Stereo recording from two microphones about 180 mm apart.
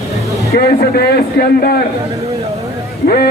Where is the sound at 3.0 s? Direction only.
60° left (ahead or behind).